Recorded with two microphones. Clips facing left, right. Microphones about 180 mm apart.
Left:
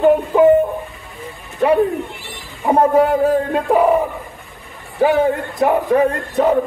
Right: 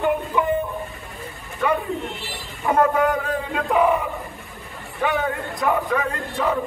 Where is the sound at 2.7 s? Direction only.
35° left (ahead or behind).